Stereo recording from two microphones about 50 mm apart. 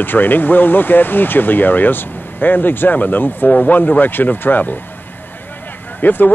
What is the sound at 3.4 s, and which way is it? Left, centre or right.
Speech, left.